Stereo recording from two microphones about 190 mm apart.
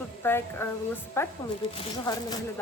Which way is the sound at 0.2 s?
10° left (ahead or behind).